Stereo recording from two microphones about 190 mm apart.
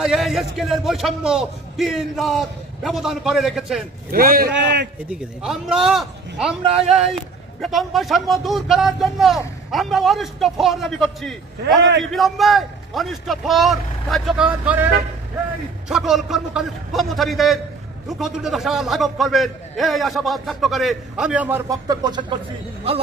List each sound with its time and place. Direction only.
0.0 s a man's voice: centre (ahead or behind)
4.1 s a man's voice: 50° right (ahead or behind)
5.1 s a man's voice: 5° right (ahead or behind)
7.6 s a man's voice: centre (ahead or behind)
15.9 s a man's voice: centre (ahead or behind); by 22.4 s 25° right (ahead or behind)